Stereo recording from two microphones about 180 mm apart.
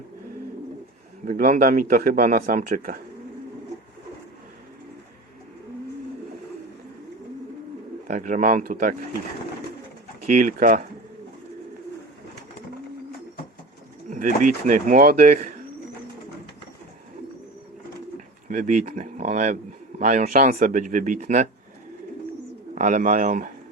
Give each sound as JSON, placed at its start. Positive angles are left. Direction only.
{"t": 1.2, "sound": "a man's voice", "side_deg": -50}
{"t": 8.0, "sound": "a man's voice", "side_deg": -45}
{"t": 10.2, "sound": "a man's voice", "side_deg": -45}
{"t": 14.7, "sound": "a man's voice", "side_deg": -50}
{"t": 18.4, "sound": "a man's voice", "side_deg": -45}
{"t": 22.7, "sound": "a man's voice", "side_deg": -45}